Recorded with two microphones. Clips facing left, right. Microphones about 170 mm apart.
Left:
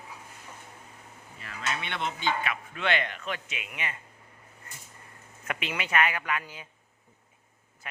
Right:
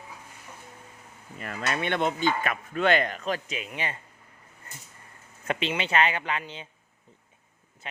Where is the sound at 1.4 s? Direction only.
50° right (ahead or behind); by 4.0 s 30° right (ahead or behind).